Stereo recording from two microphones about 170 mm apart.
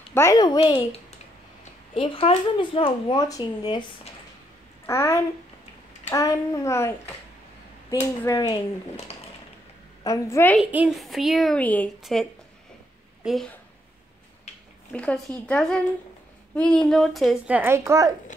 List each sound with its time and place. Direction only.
0.1 s speech: 20° left (ahead or behind)
4.8 s a child's voice: 15° left (ahead or behind)
7.9 s a child's voice: 15° left (ahead or behind)
10.0 s a child's voice: 15° left (ahead or behind)
10.6 s a woman's voice: 5° right (ahead or behind)
14.9 s a woman's voice: 5° left (ahead or behind); by 18.1 s 15° right (ahead or behind)